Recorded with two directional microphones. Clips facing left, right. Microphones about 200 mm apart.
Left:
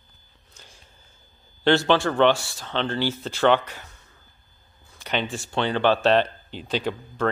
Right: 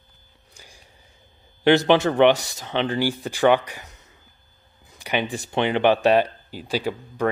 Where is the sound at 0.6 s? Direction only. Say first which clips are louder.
Right 2 dB; 15° right (ahead or behind).